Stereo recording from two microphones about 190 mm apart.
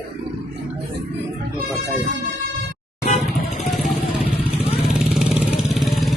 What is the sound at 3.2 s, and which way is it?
Vehicle, centre (ahead or behind).